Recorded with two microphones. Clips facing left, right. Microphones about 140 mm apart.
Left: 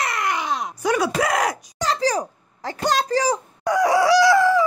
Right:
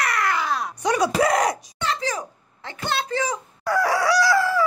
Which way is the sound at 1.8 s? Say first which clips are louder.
Left 6 dB; 35° left (ahead or behind).